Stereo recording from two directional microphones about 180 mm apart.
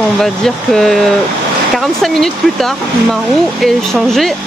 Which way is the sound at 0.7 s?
Centre (ahead or behind).